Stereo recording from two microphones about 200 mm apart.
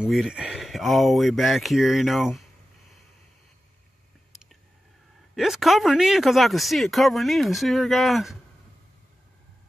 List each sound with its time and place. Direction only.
0.0 s speech: 5° right (ahead or behind)
5.3 s speech: centre (ahead or behind)